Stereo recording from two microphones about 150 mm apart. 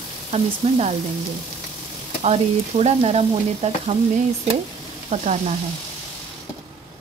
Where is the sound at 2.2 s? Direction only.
45° right (ahead or behind).